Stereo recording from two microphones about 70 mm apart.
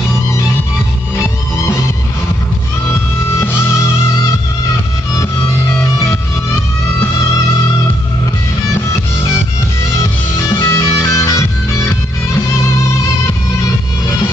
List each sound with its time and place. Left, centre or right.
3.3 s music: left
10.5 s music: left